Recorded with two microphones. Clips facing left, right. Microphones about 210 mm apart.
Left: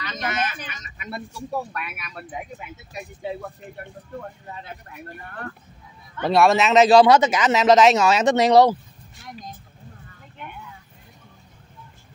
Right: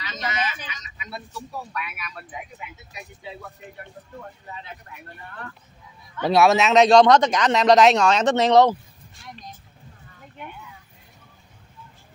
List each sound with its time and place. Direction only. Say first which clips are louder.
0.0 s a sound: left 2 dB; 55° left (ahead or behind)
1.7 s speech: even; 50° left (ahead or behind)
6.2 s speech: even; centre (ahead or behind)